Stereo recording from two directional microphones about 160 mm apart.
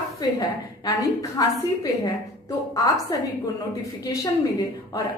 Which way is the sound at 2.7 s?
20° left (ahead or behind).